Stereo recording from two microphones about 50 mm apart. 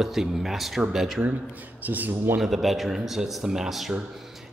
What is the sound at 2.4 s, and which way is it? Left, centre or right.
Speech, centre.